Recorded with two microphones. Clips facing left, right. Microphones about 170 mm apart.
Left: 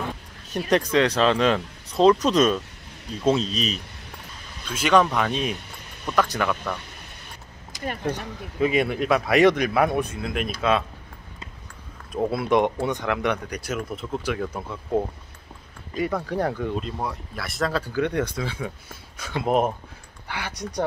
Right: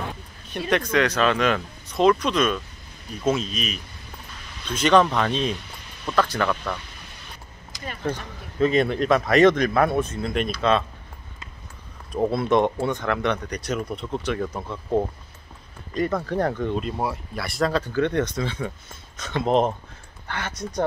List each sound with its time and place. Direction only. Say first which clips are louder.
0.7 s speech: left 1 dB; 35° left (ahead or behind)
4.6 s speech: right 1 dB; 10° left (ahead or behind)
8.0 s speech: right 4 dB; 15° left (ahead or behind)
10.2 s speech: right 3 dB; 5° left (ahead or behind)
12.1 s speech: right 1 dB; 5° left (ahead or behind)